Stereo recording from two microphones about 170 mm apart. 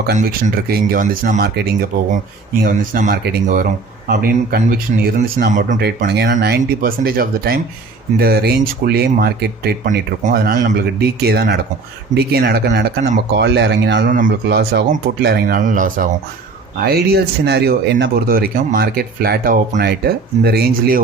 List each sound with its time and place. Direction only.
0.1 s speech: 50° right (ahead or behind)
2.6 s speech: 55° right (ahead or behind)
4.1 s a man's voice: 75° right (ahead or behind)
4.7 s speech: 55° right (ahead or behind)
6.1 s speech: 80° right
6.6 s speech: 60° right (ahead or behind); by 14.8 s 75° right (ahead or behind)
15.2 s speech: 65° right (ahead or behind); by 16.0 s 50° right (ahead or behind)
16.8 s speech: 65° right (ahead or behind)